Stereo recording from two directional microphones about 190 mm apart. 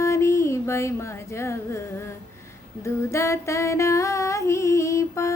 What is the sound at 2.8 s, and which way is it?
Female singing, 15° left (ahead or behind).